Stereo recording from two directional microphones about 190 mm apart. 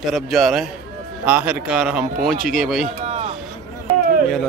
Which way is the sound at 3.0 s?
35° right (ahead or behind).